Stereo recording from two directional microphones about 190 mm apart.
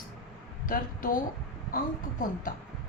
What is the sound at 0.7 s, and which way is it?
Speech, 45° left (ahead or behind).